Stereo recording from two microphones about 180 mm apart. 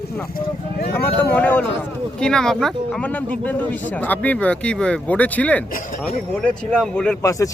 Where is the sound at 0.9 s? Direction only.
10° left (ahead or behind).